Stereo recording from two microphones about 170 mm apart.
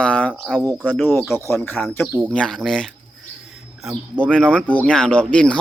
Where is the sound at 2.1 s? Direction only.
10° right (ahead or behind).